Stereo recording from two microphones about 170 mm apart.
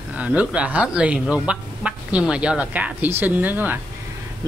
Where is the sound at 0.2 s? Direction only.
5° right (ahead or behind).